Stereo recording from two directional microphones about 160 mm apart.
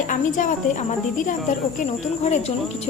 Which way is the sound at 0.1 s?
55° left (ahead or behind).